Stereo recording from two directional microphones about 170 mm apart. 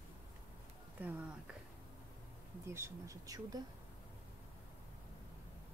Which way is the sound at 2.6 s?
15° right (ahead or behind).